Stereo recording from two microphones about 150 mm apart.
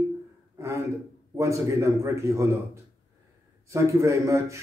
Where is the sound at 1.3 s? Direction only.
20° right (ahead or behind).